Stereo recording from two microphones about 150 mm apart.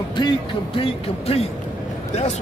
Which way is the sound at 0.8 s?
40° left (ahead or behind).